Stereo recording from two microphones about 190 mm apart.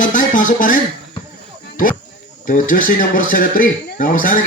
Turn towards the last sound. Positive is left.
turn(degrees=45)  # may be behind; listen again after turning